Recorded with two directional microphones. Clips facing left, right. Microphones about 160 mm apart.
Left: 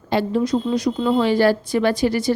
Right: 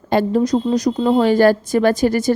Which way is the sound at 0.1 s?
45° right (ahead or behind).